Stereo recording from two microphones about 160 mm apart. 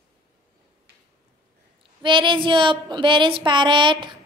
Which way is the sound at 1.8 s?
30° right (ahead or behind).